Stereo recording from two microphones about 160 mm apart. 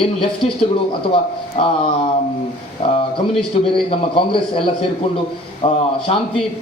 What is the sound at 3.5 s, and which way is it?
A man's voice, 35° left (ahead or behind).